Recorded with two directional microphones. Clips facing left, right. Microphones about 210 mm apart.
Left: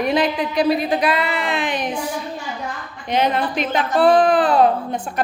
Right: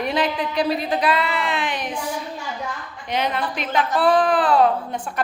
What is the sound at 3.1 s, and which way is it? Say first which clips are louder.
A woman's voice: left 5 dB; 25° left (ahead or behind).